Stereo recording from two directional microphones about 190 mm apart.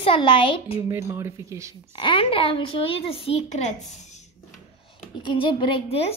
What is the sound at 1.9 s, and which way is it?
Speech, 25° left (ahead or behind).